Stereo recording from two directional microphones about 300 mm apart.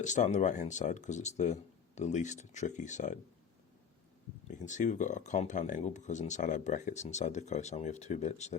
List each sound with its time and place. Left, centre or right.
0.0 s speech: left
4.4 s speech: left